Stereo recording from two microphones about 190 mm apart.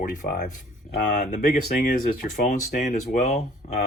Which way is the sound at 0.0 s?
45° left (ahead or behind).